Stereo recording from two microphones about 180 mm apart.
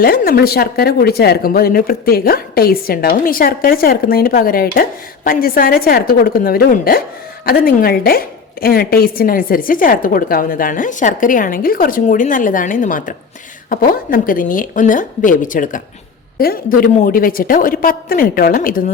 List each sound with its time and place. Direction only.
0.0 s a woman's voice: 55° left (ahead or behind)